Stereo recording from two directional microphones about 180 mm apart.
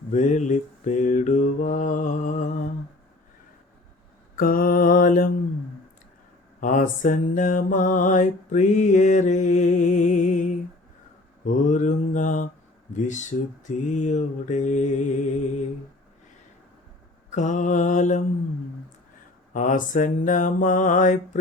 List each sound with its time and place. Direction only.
0.1 s mantra: 40° left (ahead or behind)
4.4 s mantra: 50° left (ahead or behind)
6.6 s mantra: 45° left (ahead or behind)
17.3 s mantra: 40° left (ahead or behind)
19.5 s mantra: 45° left (ahead or behind)